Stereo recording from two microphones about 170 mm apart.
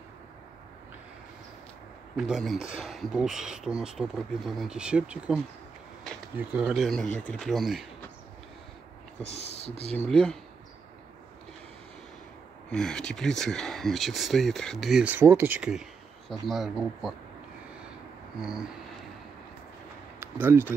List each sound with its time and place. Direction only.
2.1 s speech: centre (ahead or behind)
9.2 s speech: 40° left (ahead or behind)
9.8 s speech: 5° left (ahead or behind)
12.7 s speech: 5° left (ahead or behind)
18.4 s speech: 5° right (ahead or behind)
20.2 s a sound: 10° right (ahead or behind)